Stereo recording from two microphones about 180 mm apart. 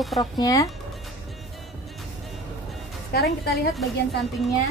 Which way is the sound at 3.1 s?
65° left (ahead or behind).